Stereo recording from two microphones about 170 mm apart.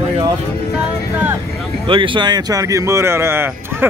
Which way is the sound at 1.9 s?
30° right (ahead or behind).